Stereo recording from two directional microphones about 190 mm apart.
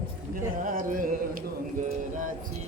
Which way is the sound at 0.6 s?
45° right (ahead or behind).